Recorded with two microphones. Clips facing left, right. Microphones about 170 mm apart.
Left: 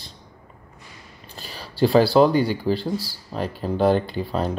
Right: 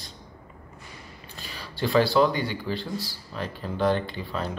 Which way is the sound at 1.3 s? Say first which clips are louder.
Left 3 dB; 35° left (ahead or behind).